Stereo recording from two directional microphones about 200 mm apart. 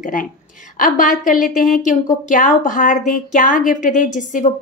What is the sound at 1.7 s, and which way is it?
A woman's voice, 40° left (ahead or behind).